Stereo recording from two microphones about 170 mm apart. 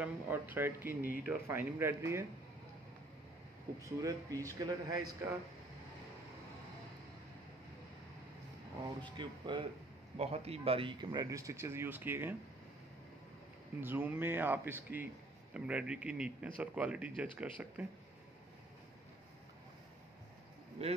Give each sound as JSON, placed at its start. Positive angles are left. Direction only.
{"t": 0.0, "sound": "speech", "side_deg": -10}
{"t": 4.0, "sound": "speech", "side_deg": -20}
{"t": 9.1, "sound": "speech", "side_deg": -25}
{"t": 13.8, "sound": "speech", "side_deg": -10}
{"t": 20.8, "sound": "speech", "side_deg": -40}